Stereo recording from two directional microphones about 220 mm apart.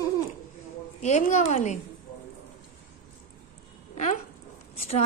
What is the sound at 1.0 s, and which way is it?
Speech, 30° left (ahead or behind).